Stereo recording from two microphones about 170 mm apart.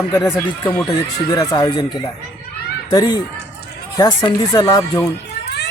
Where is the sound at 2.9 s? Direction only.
25° left (ahead or behind).